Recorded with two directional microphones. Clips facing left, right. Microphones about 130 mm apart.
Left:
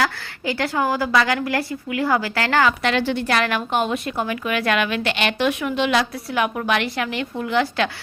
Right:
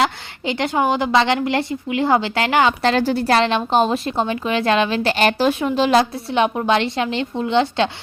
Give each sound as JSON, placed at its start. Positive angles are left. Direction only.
{"t": 0.0, "sound": "a woman's voice", "side_deg": -20}
{"t": 2.8, "sound": "a woman's voice", "side_deg": -40}